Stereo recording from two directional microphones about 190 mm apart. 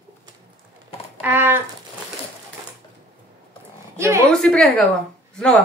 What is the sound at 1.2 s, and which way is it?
Speech, 10° right (ahead or behind).